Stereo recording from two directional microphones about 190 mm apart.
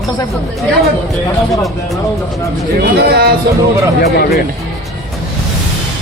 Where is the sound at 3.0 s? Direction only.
55° right (ahead or behind).